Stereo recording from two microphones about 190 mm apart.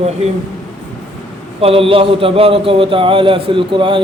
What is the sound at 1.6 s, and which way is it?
A man's voice, 30° right (ahead or behind).